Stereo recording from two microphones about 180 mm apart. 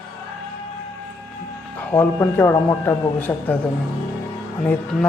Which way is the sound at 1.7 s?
10° left (ahead or behind).